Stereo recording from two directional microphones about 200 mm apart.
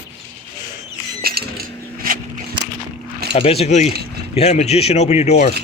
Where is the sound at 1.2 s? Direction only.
50° right (ahead or behind).